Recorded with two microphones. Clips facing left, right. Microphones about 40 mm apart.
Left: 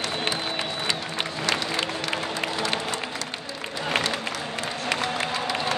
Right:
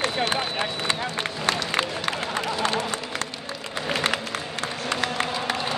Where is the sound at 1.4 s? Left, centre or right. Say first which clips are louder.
Right 2 dB; right.